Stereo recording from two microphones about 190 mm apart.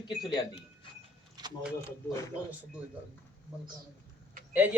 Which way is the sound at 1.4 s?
20° right (ahead or behind).